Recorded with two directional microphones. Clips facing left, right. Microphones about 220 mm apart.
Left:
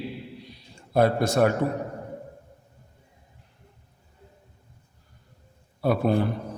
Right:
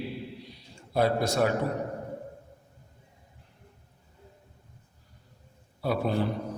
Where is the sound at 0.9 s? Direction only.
50° left (ahead or behind).